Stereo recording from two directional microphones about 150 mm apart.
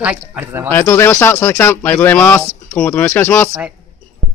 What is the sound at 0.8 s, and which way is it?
Speech, 20° left (ahead or behind).